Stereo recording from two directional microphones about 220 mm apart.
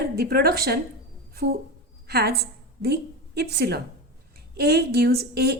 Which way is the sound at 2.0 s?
45° right (ahead or behind).